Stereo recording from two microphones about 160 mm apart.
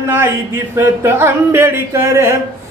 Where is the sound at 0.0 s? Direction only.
15° right (ahead or behind).